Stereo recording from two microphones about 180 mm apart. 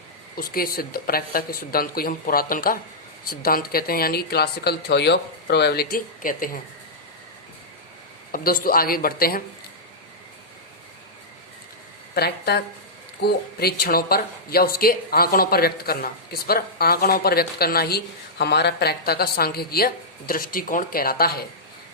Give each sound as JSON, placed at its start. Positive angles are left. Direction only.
{"t": 0.3, "sound": "speech", "side_deg": 55}
{"t": 8.3, "sound": "speech", "side_deg": 55}
{"t": 12.1, "sound": "speech", "side_deg": 60}